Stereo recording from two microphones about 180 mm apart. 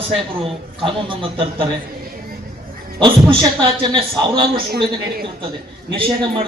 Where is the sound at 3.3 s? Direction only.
25° right (ahead or behind).